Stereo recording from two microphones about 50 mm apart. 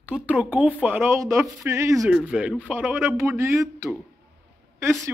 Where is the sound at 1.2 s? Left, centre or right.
Right.